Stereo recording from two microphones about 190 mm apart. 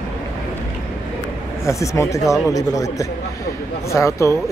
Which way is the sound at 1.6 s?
15° left (ahead or behind).